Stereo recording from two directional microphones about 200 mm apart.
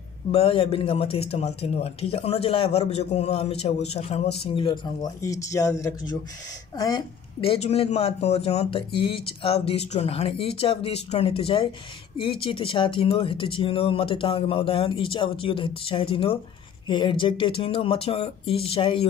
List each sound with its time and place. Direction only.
0.3 s speech: 30° left (ahead or behind)